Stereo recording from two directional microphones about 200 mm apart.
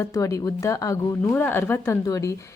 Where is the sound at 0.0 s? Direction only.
15° left (ahead or behind).